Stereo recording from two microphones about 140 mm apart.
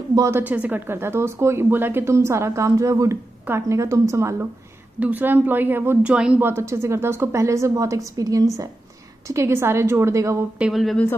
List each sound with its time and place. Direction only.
0.1 s a woman's voice: 25° right (ahead or behind)
0.4 s a woman's voice: 10° right (ahead or behind)
10.6 s speech: centre (ahead or behind)